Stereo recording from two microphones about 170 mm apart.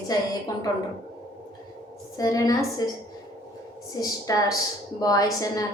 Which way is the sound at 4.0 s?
20° left (ahead or behind).